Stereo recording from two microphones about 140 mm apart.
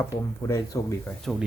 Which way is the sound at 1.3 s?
Centre (ahead or behind).